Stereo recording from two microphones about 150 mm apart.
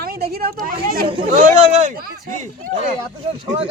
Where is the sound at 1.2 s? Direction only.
60° right (ahead or behind).